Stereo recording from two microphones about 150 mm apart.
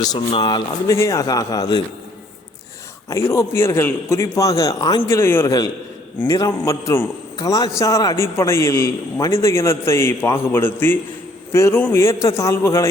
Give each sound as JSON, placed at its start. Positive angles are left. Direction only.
{"t": 0.3, "sound": "speech", "side_deg": 35}
{"t": 0.9, "sound": "a man's voice", "side_deg": 20}
{"t": 3.1, "sound": "a man's voice", "side_deg": 20}